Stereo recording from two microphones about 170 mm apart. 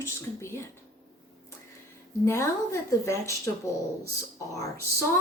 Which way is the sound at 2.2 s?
15° left (ahead or behind).